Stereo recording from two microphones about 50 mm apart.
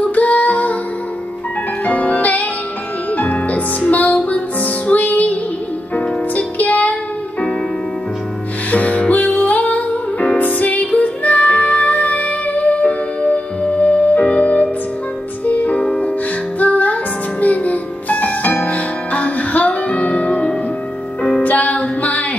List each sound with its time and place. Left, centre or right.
0.0 s music: left
1.9 s music: left
8.7 s music: left